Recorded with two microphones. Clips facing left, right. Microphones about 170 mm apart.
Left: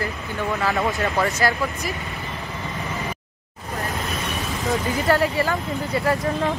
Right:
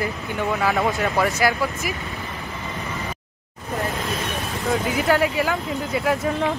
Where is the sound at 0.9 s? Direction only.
Centre (ahead or behind).